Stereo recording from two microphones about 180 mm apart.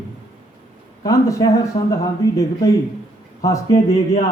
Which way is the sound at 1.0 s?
20° left (ahead or behind).